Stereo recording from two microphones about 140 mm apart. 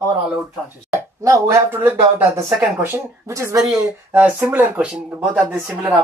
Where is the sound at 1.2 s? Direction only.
20° right (ahead or behind).